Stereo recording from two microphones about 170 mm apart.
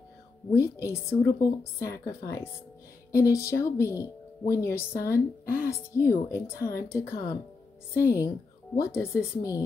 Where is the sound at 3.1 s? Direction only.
15° left (ahead or behind).